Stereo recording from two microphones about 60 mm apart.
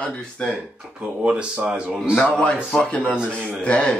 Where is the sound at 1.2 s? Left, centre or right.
Centre.